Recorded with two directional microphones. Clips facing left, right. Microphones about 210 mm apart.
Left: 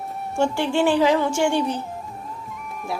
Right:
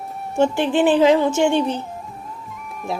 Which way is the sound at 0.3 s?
20° right (ahead or behind).